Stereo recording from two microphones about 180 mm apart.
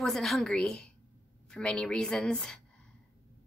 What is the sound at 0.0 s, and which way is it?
A woman's voice, centre (ahead or behind).